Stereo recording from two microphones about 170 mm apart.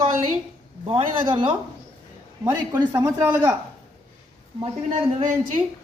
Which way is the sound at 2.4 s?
15° right (ahead or behind).